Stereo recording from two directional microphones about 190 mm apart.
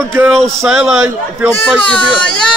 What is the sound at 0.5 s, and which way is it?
A man's voice, centre (ahead or behind).